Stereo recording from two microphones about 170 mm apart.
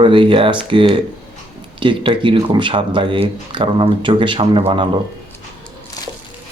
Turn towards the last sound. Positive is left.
turn(degrees=-30)  # may be behind; listen again after turning